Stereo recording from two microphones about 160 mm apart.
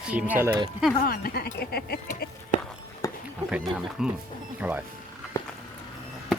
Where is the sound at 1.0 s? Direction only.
70° left (ahead or behind).